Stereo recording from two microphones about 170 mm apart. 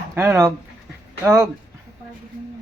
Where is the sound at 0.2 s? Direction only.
15° right (ahead or behind).